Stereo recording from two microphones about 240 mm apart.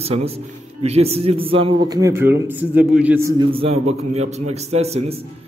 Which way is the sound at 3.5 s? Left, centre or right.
Right.